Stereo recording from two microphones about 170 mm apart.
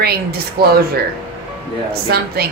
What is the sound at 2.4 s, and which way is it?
Speech, 65° right (ahead or behind).